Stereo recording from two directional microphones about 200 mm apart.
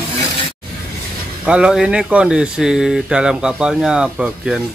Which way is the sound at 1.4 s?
5° right (ahead or behind).